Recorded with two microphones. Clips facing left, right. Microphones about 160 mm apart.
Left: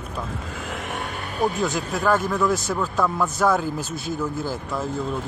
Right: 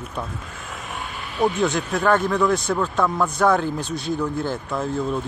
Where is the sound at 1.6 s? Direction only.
Centre (ahead or behind).